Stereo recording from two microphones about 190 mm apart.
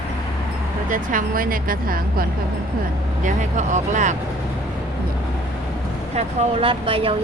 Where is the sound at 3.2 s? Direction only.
40° right (ahead or behind).